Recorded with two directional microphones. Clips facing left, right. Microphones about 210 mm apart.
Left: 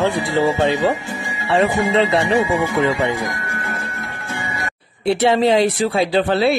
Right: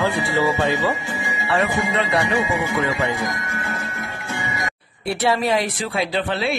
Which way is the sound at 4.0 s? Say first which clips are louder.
Even; 15° right (ahead or behind).